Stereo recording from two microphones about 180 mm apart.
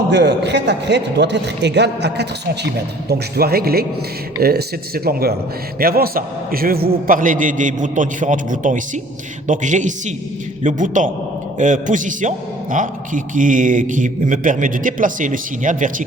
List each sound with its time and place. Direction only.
0.1 s a man's voice: 70° right (ahead or behind); by 16.0 s 45° right (ahead or behind)